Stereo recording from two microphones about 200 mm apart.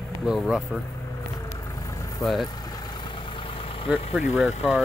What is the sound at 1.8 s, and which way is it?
Vehicle, 15° left (ahead or behind).